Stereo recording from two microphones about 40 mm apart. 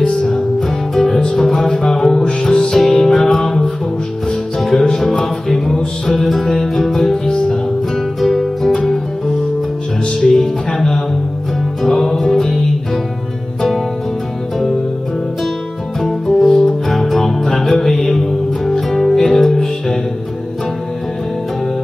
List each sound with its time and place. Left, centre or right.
0.1 s music: centre
7.2 s music: centre
8.2 s music: centre
10.2 s music: centre
16.0 s music: centre
16.4 s music: centre
16.9 s music: centre